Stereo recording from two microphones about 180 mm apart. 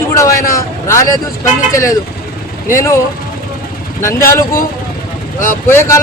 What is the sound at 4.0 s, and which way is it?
Speech, 15° left (ahead or behind).